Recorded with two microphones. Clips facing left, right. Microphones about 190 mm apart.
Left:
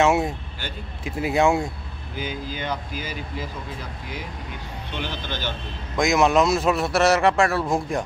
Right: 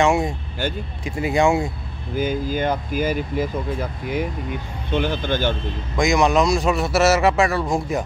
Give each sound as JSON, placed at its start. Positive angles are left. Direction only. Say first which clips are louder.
{"t": 0.0, "sound": "a man's voice", "louder": "right 1 dB", "side_deg": 5}
{"t": 2.1, "sound": "speech", "louder": "right 9 dB", "side_deg": -50}
{"t": 4.9, "sound": "speech", "louder": "right 10 dB", "side_deg": -50}
{"t": 5.9, "sound": "a man's voice", "louder": "right 1 dB", "side_deg": 0}